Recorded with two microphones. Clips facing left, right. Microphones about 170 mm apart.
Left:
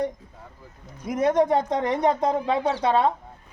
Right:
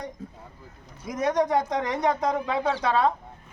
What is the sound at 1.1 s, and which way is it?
Speech, 25° left (ahead or behind).